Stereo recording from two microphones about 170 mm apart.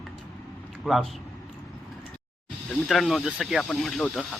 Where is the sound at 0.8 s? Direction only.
Centre (ahead or behind).